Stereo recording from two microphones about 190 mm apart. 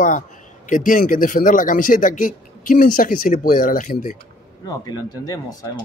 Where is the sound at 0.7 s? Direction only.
45° left (ahead or behind).